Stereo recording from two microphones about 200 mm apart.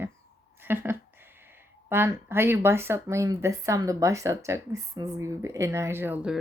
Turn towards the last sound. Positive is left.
turn(degrees=-5)  # may be behind; listen again after turning